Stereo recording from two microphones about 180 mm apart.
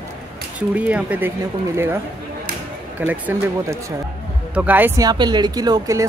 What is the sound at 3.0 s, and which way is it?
Speech, 10° right (ahead or behind).